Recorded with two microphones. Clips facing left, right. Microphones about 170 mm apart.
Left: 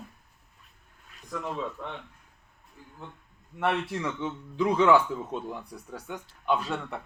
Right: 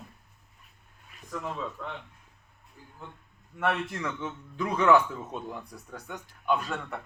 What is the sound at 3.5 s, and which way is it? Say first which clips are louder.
Speech: left 1 dB; 10° left (ahead or behind).